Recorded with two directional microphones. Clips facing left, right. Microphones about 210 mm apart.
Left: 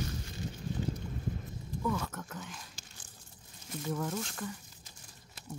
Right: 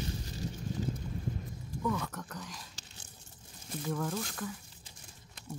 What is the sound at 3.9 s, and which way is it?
Speech, 5° left (ahead or behind).